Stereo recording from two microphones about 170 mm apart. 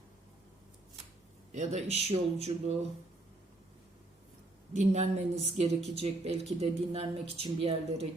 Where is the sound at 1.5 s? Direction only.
40° right (ahead or behind).